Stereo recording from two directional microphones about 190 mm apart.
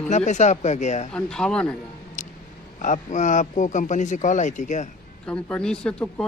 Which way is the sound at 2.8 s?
40° left (ahead or behind).